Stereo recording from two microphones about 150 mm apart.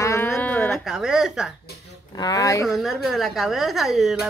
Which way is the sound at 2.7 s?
Centre (ahead or behind).